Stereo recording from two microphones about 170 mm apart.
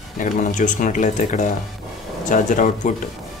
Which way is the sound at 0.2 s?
50° left (ahead or behind).